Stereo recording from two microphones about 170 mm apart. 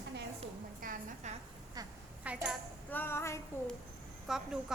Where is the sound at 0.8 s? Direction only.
55° right (ahead or behind).